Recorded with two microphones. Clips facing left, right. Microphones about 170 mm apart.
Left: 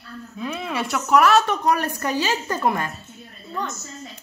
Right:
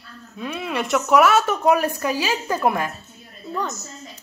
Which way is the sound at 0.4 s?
5° right (ahead or behind).